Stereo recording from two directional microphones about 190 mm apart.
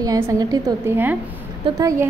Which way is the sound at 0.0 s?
15° right (ahead or behind).